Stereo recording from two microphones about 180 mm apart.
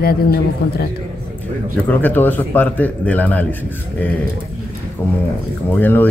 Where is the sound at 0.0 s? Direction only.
60° left (ahead or behind).